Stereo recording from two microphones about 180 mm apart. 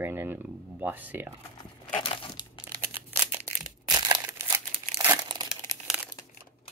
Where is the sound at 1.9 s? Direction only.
30° left (ahead or behind).